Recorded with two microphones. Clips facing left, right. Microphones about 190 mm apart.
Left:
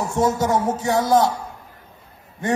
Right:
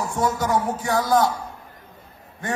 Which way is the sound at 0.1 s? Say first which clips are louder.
Left 3 dB; 25° left (ahead or behind).